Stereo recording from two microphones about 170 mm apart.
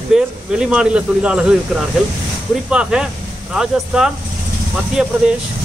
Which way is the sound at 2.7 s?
5° right (ahead or behind).